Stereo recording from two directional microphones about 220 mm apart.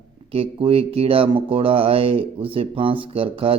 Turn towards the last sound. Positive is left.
turn(degrees=-25)  # may be behind; listen again after turning